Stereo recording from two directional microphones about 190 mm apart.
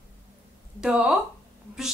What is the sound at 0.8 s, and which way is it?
Speech, 5° right (ahead or behind).